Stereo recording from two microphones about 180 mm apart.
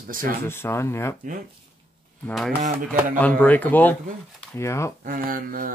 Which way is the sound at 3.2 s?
10° left (ahead or behind).